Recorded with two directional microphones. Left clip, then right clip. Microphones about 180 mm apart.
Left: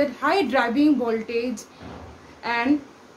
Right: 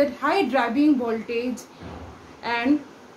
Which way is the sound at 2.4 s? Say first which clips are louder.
Left 1 dB; 10° left (ahead or behind).